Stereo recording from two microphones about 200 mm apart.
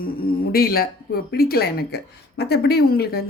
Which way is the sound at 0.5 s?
50° left (ahead or behind).